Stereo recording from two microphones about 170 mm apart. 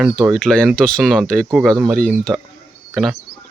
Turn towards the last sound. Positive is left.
turn(degrees=0)  # may be behind; listen again after turning